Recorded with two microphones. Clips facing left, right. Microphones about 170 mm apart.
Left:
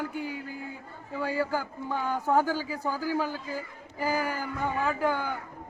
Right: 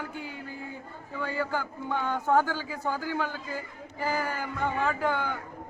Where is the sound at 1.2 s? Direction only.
35° left (ahead or behind).